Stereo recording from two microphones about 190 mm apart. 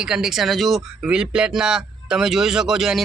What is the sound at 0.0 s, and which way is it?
Speech, 5° right (ahead or behind).